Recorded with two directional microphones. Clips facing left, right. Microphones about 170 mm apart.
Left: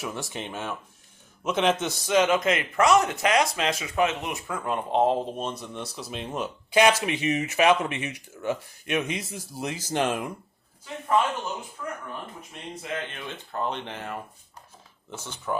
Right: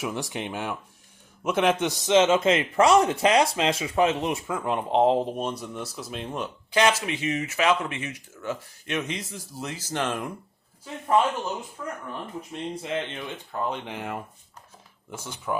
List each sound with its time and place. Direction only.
0.0 s a man's voice: 15° right (ahead or behind)
4.4 s speech: 20° right (ahead or behind); by 10.2 s 10° left (ahead or behind)
12.7 s a man's voice: 25° right (ahead or behind)
13.1 s speech: 10° right (ahead or behind)